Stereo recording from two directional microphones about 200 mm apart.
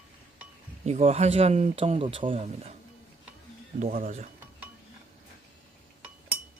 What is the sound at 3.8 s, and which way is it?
Speech, 40° right (ahead or behind).